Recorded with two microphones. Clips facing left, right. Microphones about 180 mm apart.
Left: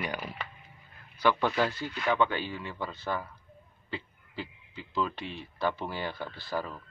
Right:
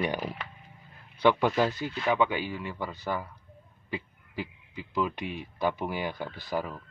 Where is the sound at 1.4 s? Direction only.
15° right (ahead or behind).